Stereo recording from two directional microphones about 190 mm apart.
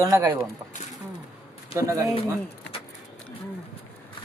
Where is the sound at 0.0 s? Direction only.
15° right (ahead or behind).